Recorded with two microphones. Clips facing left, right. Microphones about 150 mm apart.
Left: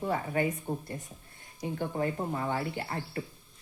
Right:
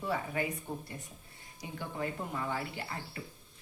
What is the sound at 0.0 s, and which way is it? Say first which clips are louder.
Speech: left 4 dB; 45° left (ahead or behind).